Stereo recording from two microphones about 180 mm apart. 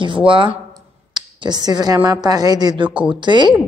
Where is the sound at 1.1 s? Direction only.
25° right (ahead or behind).